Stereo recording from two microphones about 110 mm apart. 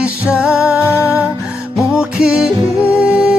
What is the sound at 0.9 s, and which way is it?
Music, 25° left (ahead or behind).